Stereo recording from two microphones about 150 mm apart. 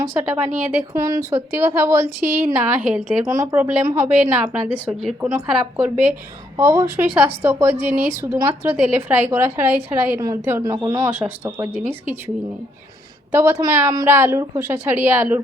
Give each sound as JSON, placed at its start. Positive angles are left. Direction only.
{"t": 0.0, "sound": "a woman's voice", "side_deg": -15}
{"t": 0.9, "sound": "a woman's voice", "side_deg": -20}
{"t": 3.2, "sound": "a woman's voice", "side_deg": -20}
{"t": 6.6, "sound": "a woman's voice", "side_deg": -20}
{"t": 13.3, "sound": "a woman's voice", "side_deg": -20}